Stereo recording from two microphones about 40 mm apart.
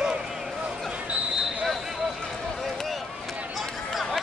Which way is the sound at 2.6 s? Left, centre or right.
Centre.